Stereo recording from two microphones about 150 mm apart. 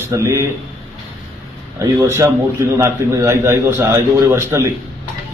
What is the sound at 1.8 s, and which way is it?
A man's voice, 20° right (ahead or behind).